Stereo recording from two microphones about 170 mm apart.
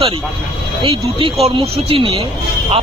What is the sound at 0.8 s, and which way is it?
Speech, 35° right (ahead or behind).